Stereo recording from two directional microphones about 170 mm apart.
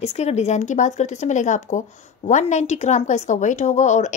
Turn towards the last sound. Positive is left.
turn(degrees=45)  # may be behind; listen again after turning